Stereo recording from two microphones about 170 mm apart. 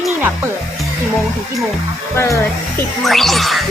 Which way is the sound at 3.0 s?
Centre (ahead or behind).